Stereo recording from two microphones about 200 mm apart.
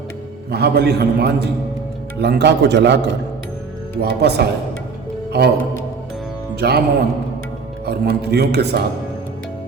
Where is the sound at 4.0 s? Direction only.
55° right (ahead or behind).